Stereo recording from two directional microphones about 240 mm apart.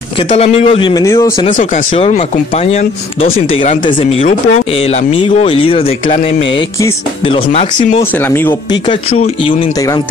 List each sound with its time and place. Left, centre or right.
0.3 s speech: left
1.4 s speech: left
8.2 s speech: centre
8.8 s speech: left